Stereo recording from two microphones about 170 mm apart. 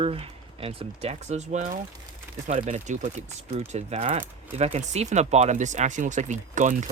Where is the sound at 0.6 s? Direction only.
35° right (ahead or behind).